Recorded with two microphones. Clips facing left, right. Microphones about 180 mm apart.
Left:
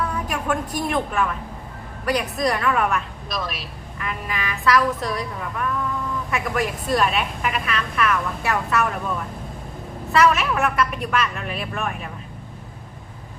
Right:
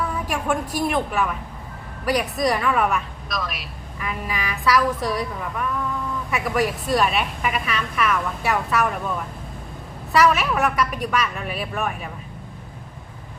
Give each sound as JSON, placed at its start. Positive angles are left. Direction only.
{"t": 0.3, "sound": "a woman's voice", "side_deg": -5}
{"t": 3.2, "sound": "a man's voice", "side_deg": 30}
{"t": 4.0, "sound": "a woman's voice", "side_deg": -5}
{"t": 10.1, "sound": "a woman's voice", "side_deg": -5}